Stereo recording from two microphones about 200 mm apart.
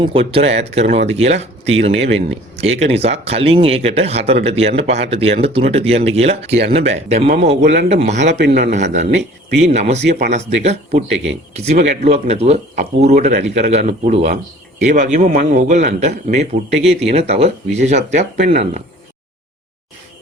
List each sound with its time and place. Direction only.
0.0 s speech: 25° right (ahead or behind)
8.4 s a man's voice: 50° right (ahead or behind)
8.7 s speech: 35° right (ahead or behind)